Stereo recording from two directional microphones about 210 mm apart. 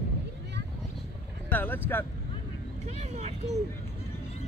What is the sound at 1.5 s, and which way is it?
Speech, 10° left (ahead or behind).